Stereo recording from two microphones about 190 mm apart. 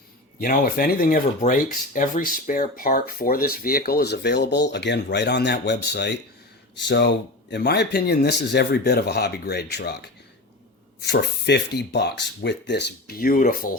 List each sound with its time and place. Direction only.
0.3 s speech: 50° left (ahead or behind)
11.0 s speech: 60° left (ahead or behind)